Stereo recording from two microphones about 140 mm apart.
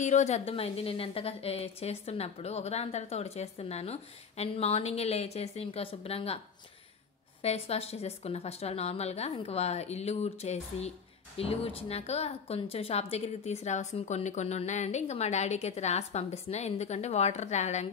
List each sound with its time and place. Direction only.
0.0 s a woman's voice: 55° left (ahead or behind)
7.4 s a woman's voice: 45° left (ahead or behind)